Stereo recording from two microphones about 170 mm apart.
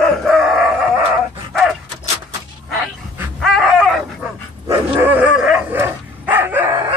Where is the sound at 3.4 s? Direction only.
Centre (ahead or behind); by 6.9 s 15° right (ahead or behind).